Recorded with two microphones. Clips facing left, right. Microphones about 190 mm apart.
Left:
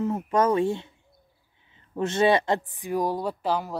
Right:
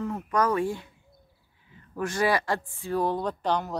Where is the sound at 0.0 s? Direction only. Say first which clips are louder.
Left 3 dB; 25° left (ahead or behind).